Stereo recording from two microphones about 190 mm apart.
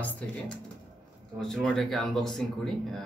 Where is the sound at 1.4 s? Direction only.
Centre (ahead or behind).